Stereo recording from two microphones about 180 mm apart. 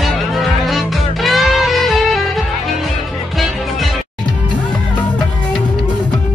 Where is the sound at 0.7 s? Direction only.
Centre (ahead or behind).